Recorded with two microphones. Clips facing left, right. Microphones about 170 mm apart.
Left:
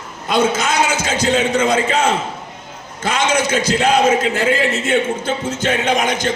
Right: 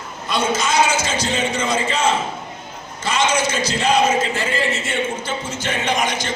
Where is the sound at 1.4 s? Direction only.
60° left (ahead or behind).